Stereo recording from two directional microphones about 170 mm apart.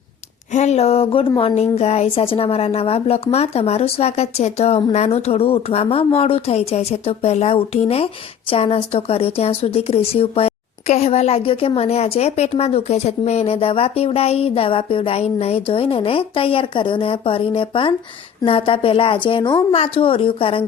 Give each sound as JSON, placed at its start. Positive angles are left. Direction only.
{"t": 0.5, "sound": "a woman's voice", "side_deg": 40}